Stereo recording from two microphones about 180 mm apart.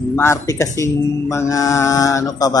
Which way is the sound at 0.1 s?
15° left (ahead or behind).